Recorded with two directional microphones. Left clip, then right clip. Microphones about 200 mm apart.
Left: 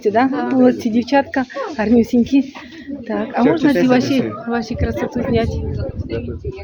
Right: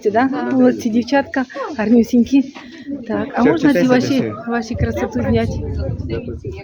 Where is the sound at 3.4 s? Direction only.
50° right (ahead or behind).